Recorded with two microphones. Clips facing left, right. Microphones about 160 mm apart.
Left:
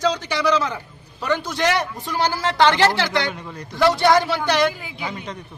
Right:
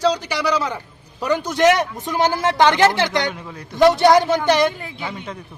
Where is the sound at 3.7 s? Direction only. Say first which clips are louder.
Right 4 dB; 20° right (ahead or behind).